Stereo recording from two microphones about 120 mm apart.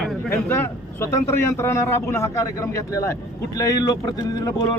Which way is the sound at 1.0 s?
25° left (ahead or behind).